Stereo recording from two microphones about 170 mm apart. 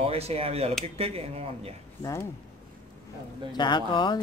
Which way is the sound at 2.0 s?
20° left (ahead or behind).